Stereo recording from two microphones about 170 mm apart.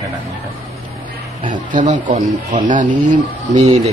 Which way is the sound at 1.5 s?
50° right (ahead or behind).